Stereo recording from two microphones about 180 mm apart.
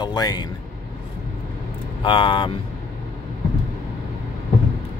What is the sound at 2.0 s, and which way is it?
Speech, 30° left (ahead or behind).